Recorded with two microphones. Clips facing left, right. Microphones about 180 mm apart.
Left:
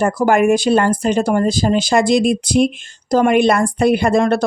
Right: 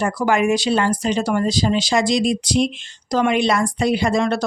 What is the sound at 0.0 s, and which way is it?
Speech, 50° left (ahead or behind).